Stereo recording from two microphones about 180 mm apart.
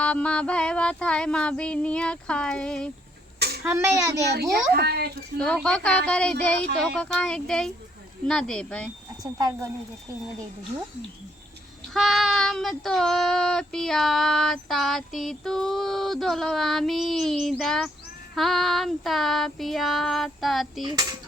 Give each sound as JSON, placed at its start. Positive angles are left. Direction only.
{"t": 0.0, "sound": "child singing", "side_deg": 5}
{"t": 3.3, "sound": "a sound", "side_deg": -65}
{"t": 3.6, "sound": "a child's voice", "side_deg": -15}
{"t": 4.7, "sound": "a child's voice", "side_deg": -65}
{"t": 5.4, "sound": "child singing", "side_deg": 5}
{"t": 9.2, "sound": "speech", "side_deg": -20}
{"t": 11.9, "sound": "child singing", "side_deg": 0}